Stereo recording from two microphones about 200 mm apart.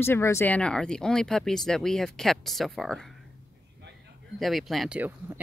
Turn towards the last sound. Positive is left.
turn(degrees=-10)  # may be behind; listen again after turning